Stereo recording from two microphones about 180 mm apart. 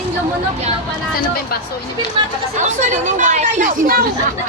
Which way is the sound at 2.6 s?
45° right (ahead or behind).